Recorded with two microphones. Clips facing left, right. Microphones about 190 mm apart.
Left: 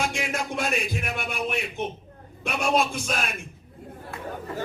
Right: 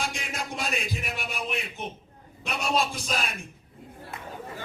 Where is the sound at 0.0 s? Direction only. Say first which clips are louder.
Left 5 dB; 55° left (ahead or behind).